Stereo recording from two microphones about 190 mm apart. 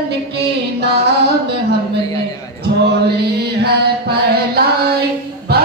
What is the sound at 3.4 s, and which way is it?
Chant, 60° right (ahead or behind).